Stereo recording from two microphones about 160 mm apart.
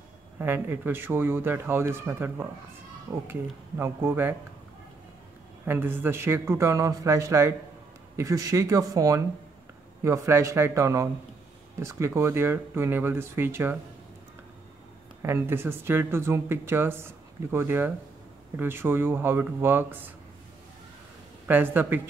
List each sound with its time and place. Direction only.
0.4 s speech: 15° right (ahead or behind)
5.7 s speech: 15° right (ahead or behind)
15.2 s speech: 15° right (ahead or behind)
21.5 s speech: 10° right (ahead or behind)